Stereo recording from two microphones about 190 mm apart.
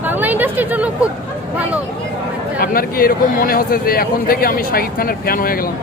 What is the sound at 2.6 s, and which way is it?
Speech, 50° left (ahead or behind).